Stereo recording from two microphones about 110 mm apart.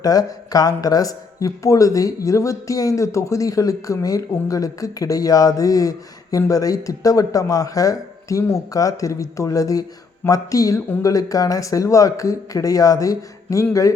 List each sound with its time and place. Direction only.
0.0 s speech: 35° left (ahead or behind)